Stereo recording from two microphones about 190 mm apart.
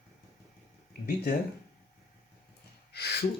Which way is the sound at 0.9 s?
50° left (ahead or behind).